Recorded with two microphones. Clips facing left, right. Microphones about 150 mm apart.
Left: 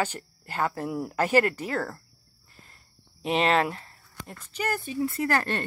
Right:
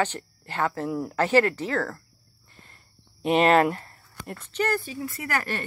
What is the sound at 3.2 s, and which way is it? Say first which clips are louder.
Speech: right 5 dB; centre (ahead or behind).